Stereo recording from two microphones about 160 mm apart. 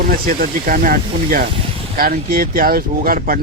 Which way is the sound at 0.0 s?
65° right (ahead or behind).